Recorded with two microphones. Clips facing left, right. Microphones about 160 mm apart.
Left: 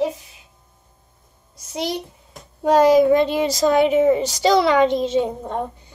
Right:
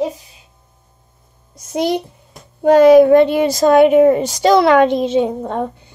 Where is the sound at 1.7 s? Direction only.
55° right (ahead or behind).